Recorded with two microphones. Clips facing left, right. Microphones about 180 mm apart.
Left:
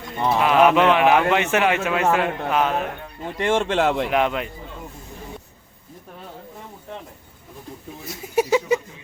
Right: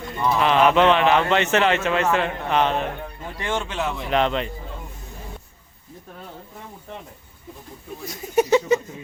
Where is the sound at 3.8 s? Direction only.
85° left.